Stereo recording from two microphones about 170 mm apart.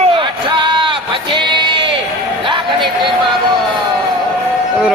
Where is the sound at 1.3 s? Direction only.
30° right (ahead or behind).